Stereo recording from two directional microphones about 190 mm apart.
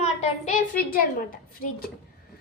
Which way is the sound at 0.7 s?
50° left (ahead or behind).